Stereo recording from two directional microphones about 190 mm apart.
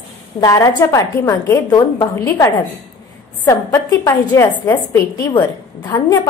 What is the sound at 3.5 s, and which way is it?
A woman's voice, 15° left (ahead or behind).